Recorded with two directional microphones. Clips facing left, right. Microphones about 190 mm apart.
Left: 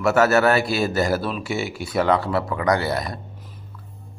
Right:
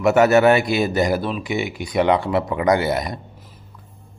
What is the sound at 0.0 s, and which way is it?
A man's voice, 20° right (ahead or behind).